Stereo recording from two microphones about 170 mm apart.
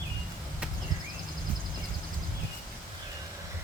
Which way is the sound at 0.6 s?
5° right (ahead or behind).